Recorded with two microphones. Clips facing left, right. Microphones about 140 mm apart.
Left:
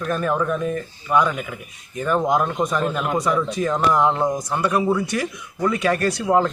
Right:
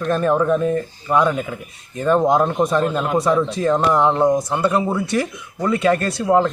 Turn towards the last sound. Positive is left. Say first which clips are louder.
# right 2 dB
turn(degrees=-25)  # may be behind; listen again after turning